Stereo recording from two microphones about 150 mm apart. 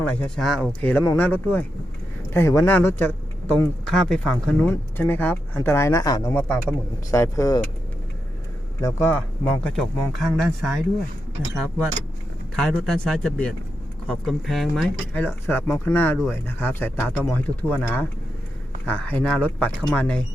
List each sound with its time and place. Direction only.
0.0 s speech: 10° left (ahead or behind)
4.7 s speech: 15° left (ahead or behind)
8.8 s speech: 15° left (ahead or behind)
12.5 s speech: centre (ahead or behind)
15.1 s speech: 15° left (ahead or behind)